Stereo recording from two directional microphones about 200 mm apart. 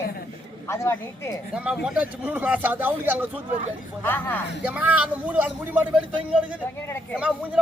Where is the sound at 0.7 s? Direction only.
15° left (ahead or behind).